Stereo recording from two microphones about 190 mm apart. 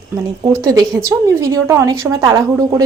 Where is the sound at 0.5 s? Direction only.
Centre (ahead or behind).